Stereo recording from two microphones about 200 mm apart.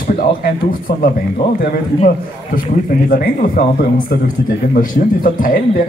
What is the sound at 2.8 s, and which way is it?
Speech, 45° left (ahead or behind).